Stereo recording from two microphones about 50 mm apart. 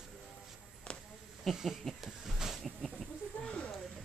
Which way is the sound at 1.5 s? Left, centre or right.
Centre.